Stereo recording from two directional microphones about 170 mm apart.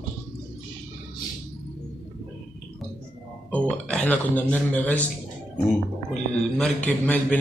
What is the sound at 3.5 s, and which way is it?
Speech, 5° left (ahead or behind).